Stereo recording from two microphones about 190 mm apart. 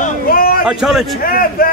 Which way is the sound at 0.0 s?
50° left (ahead or behind).